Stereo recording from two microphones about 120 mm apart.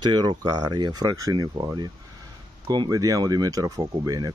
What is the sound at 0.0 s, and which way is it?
Speech, 35° right (ahead or behind).